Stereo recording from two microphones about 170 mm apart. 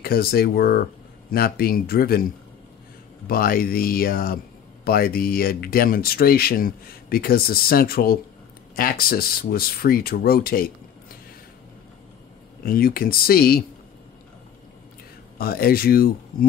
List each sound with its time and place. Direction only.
0.0 s speech: 60° left (ahead or behind)
3.3 s speech: 60° left (ahead or behind)
12.6 s speech: 60° left (ahead or behind)
15.3 s speech: 60° left (ahead or behind)